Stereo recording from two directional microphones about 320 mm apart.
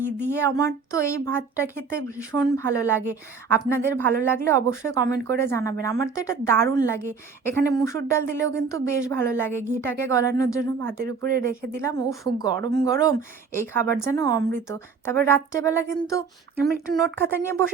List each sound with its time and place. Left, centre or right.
0.3 s a woman's voice: centre
11.2 s speech: right
11.8 s a woman's voice: centre